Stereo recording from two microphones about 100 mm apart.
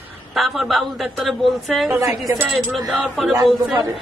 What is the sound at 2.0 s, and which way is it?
Speech, 30° right (ahead or behind).